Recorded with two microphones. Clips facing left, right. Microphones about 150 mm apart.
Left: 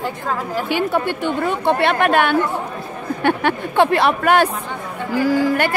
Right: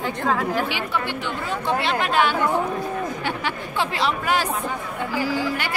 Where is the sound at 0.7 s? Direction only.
50° left (ahead or behind).